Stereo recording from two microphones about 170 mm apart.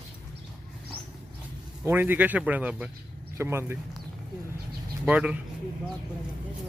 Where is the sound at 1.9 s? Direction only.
10° right (ahead or behind).